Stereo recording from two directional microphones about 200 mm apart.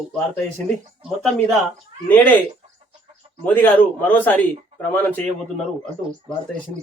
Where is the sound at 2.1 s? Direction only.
10° left (ahead or behind).